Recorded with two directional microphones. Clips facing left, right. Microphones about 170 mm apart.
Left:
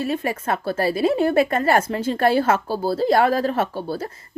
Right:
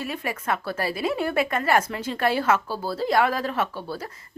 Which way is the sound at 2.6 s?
30° left (ahead or behind).